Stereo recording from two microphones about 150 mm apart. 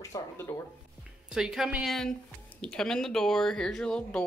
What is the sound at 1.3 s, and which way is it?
Speech, 5° right (ahead or behind).